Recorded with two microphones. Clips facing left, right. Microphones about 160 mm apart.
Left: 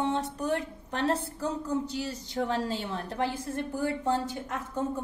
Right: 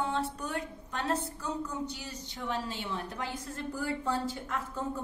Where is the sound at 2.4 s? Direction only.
50° left (ahead or behind).